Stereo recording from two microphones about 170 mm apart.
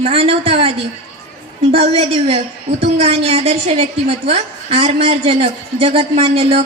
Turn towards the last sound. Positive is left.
turn(degrees=-35)  # may be behind; listen again after turning